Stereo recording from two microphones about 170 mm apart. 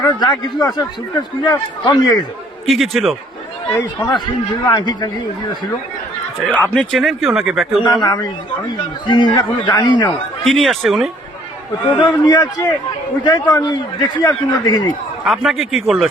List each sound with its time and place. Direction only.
0.0 s a man's voice: 25° left (ahead or behind)
2.6 s speech: centre (ahead or behind)
3.8 s a man's voice: 25° left (ahead or behind)
6.5 s speech: 5° left (ahead or behind)
7.9 s a man's voice: 25° left (ahead or behind)
10.4 s speech: centre (ahead or behind)
11.9 s a man's voice: 25° left (ahead or behind)
15.2 s speech: centre (ahead or behind)